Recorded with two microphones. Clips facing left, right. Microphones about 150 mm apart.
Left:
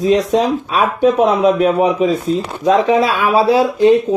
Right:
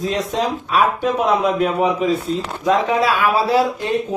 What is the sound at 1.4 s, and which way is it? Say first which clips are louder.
Speech: left 5 dB; 20° left (ahead or behind).